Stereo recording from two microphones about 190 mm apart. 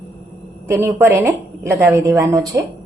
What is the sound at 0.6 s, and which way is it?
A woman's voice, 10° right (ahead or behind).